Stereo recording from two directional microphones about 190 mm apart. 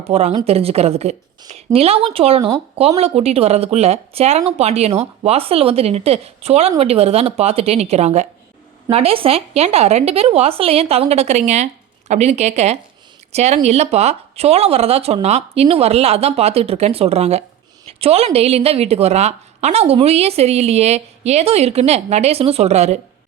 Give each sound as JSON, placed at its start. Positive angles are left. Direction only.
{"t": 0.0, "sound": "speech", "side_deg": -35}